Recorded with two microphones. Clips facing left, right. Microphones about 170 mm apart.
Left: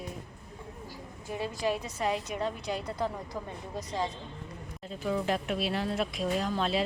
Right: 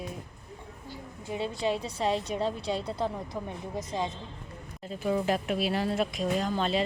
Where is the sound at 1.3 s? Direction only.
25° right (ahead or behind).